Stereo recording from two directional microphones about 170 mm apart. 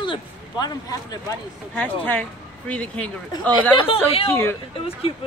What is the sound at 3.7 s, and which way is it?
Speech, 35° left (ahead or behind).